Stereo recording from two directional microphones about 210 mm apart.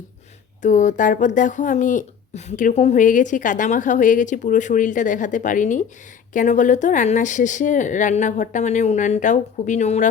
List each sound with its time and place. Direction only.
0.6 s speech: 35° left (ahead or behind)